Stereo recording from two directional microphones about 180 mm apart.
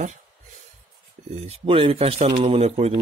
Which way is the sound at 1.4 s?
35° right (ahead or behind).